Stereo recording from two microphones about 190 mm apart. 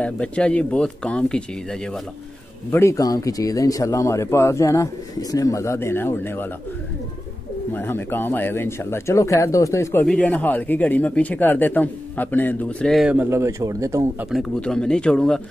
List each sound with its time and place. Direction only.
0.0 s speech: 5° left (ahead or behind)
2.7 s speech: 15° left (ahead or behind)
7.7 s speech: 10° left (ahead or behind)
10.0 s speech: 5° left (ahead or behind); by 14.0 s 15° right (ahead or behind)
14.3 s speech: 5° left (ahead or behind)